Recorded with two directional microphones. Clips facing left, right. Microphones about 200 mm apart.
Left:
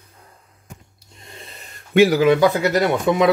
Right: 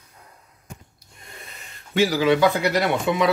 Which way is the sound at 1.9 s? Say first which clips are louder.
Left 5 dB; 60° left (ahead or behind).